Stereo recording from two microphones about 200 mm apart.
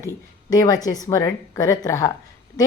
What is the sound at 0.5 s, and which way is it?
A woman's voice, 20° left (ahead or behind).